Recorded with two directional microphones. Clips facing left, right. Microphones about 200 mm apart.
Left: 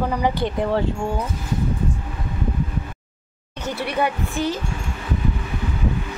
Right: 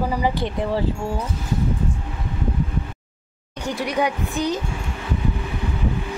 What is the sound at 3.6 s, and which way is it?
A woman's voice, 15° right (ahead or behind).